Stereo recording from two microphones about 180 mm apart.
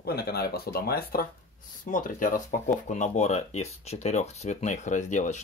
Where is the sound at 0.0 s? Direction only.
60° left (ahead or behind).